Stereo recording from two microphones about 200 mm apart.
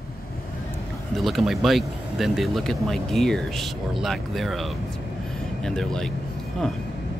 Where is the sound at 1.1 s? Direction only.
Centre (ahead or behind).